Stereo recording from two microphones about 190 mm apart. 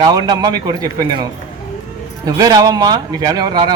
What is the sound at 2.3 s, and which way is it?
Speech, 20° right (ahead or behind).